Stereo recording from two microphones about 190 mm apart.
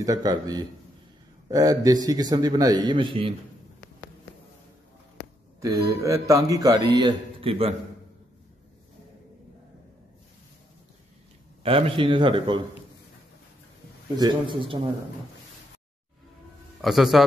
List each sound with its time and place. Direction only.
0.0 s a man's voice: 20° right (ahead or behind)
5.6 s speech: 15° right (ahead or behind)
11.6 s a man's voice: 30° right (ahead or behind)
14.1 s a man's voice: 25° right (ahead or behind)
16.8 s a man's voice: centre (ahead or behind)